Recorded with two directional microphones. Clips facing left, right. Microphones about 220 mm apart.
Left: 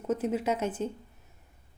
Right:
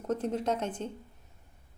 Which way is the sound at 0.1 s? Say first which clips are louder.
Left 2 dB; 5° left (ahead or behind).